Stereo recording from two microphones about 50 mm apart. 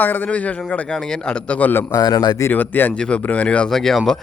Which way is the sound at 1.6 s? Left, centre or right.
Left.